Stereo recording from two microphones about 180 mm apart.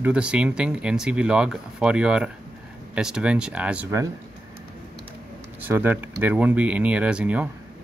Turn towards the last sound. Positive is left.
turn(degrees=-5)  # may be behind; listen again after turning